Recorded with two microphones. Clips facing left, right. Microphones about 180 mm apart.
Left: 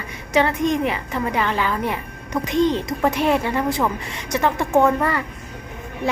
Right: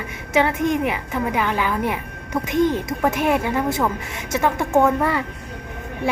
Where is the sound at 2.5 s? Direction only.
20° left (ahead or behind).